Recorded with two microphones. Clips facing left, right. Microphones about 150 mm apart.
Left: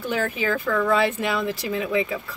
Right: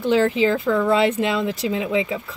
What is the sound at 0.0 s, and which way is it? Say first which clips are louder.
Speech: right 8 dB; 20° right (ahead or behind).